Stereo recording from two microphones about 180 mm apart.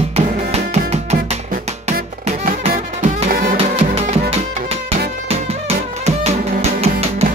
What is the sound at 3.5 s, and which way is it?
Music, 30° right (ahead or behind).